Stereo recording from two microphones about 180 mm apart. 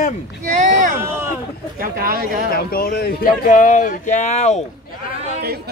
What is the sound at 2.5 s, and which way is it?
Speech, 55° left (ahead or behind).